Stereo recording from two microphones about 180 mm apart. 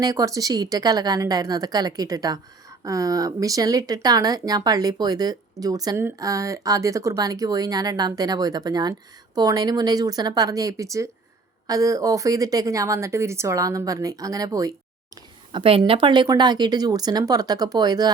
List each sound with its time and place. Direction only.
0.0 s a woman's voice: 20° right (ahead or behind)